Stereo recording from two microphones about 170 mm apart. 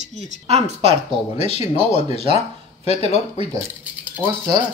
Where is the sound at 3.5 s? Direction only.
15° right (ahead or behind).